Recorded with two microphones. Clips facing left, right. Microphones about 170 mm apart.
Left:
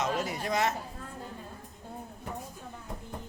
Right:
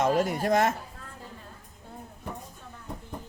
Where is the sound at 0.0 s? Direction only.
50° right (ahead or behind).